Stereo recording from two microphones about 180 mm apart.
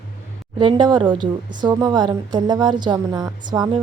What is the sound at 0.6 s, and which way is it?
A woman's voice, 25° right (ahead or behind).